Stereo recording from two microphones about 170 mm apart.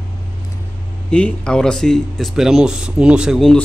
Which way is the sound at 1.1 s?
5° left (ahead or behind).